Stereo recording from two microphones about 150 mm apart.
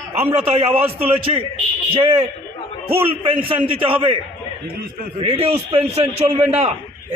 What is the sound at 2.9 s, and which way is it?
A man's voice, 40° right (ahead or behind).